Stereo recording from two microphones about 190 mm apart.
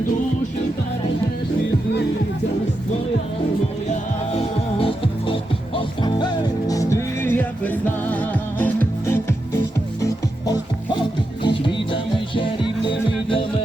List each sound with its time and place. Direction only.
4.4 s music: 30° left (ahead or behind)